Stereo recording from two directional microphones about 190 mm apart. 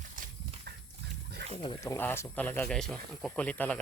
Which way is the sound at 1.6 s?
15° left (ahead or behind).